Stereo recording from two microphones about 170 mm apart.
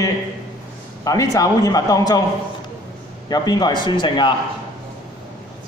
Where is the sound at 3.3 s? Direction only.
25° left (ahead or behind).